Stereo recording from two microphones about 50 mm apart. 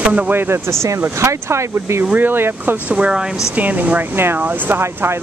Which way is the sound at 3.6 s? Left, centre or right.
Right.